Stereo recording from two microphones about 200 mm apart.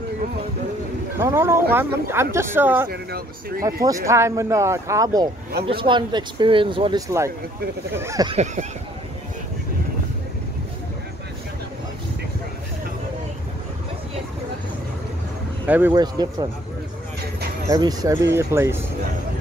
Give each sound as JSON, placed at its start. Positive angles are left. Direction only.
{"t": 1.2, "sound": "speech", "side_deg": -15}
{"t": 2.9, "sound": "speech", "side_deg": -50}
{"t": 3.8, "sound": "speech", "side_deg": -15}
{"t": 15.6, "sound": "speech", "side_deg": -10}
{"t": 15.9, "sound": "speech", "side_deg": -20}
{"t": 17.6, "sound": "speech", "side_deg": -20}